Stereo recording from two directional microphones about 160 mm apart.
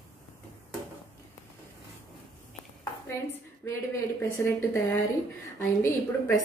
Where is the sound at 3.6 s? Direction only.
15° left (ahead or behind).